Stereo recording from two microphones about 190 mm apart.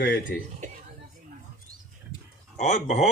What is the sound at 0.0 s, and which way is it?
Speech, 65° left (ahead or behind).